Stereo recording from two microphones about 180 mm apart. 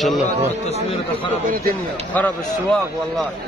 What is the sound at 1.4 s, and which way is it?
Speech, 50° right (ahead or behind).